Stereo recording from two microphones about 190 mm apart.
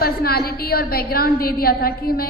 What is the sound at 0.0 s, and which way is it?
A woman's voice, 55° left (ahead or behind).